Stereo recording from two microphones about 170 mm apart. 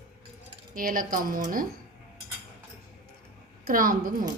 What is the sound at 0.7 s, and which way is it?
Speech, 55° right (ahead or behind).